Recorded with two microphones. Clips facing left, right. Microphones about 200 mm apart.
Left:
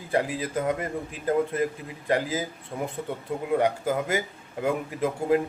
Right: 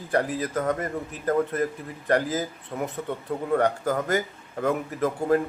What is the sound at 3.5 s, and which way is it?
A man's voice, 10° left (ahead or behind).